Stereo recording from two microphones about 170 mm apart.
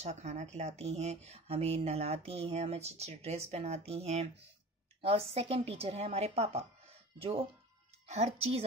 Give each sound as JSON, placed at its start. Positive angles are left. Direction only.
{"t": 0.0, "sound": "speech", "side_deg": -40}